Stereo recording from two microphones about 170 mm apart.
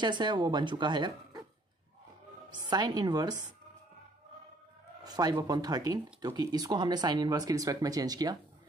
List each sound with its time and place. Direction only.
0.0 s speech: 25° right (ahead or behind)
2.7 s speech: 25° right (ahead or behind)
5.0 s speech: 20° right (ahead or behind)